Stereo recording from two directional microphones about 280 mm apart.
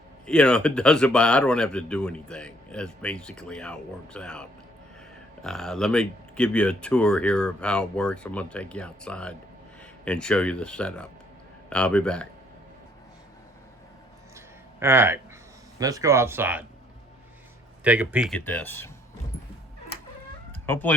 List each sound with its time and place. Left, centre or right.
0.3 s speech: centre
14.3 s a sound: centre
15.8 s speech: centre
17.8 s speech: centre
20.7 s speech: centre